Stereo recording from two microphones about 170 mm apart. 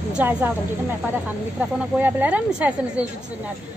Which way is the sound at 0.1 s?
10° right (ahead or behind).